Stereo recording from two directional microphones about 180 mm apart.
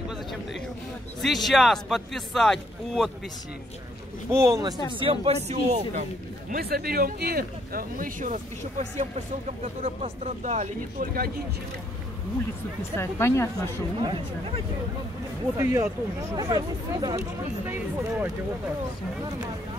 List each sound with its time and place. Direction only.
1.2 s speech: centre (ahead or behind)
4.3 s speech: 15° right (ahead or behind)
4.8 s speech: 30° right (ahead or behind)
6.5 s speech: 55° right (ahead or behind); by 11.1 s 40° right (ahead or behind)
12.9 s a woman's voice: 15° left (ahead or behind)
13.9 s speech: 30° right (ahead or behind)
15.5 s speech: 15° right (ahead or behind)